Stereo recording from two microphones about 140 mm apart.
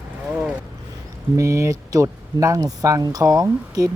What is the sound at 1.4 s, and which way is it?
Speech, 20° right (ahead or behind).